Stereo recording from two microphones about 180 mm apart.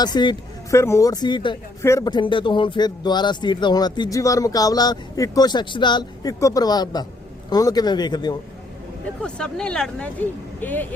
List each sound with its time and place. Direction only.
0.0 s speech: 25° left (ahead or behind)
9.2 s speech: 5° left (ahead or behind)